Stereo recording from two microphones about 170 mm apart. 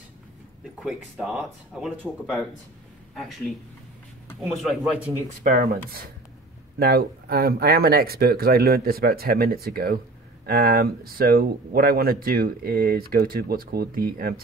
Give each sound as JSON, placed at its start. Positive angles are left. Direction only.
{"t": 0.8, "sound": "speech", "side_deg": 0}
{"t": 4.6, "sound": "speech", "side_deg": 0}
{"t": 5.4, "sound": "speech", "side_deg": -50}
{"t": 6.8, "sound": "speech", "side_deg": -60}